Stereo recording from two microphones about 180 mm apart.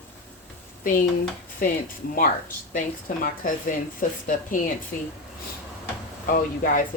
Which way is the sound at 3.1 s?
45° left (ahead or behind).